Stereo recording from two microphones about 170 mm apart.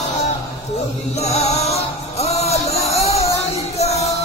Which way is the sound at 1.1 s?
40° left (ahead or behind).